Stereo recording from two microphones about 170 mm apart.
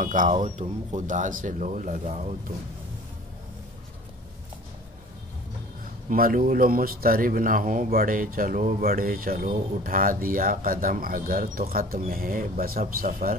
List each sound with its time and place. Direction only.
0.0 s speech: 50° right (ahead or behind)
6.0 s a man's voice: 55° right (ahead or behind)